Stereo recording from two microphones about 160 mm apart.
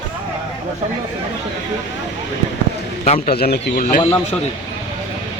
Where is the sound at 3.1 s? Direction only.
70° left (ahead or behind).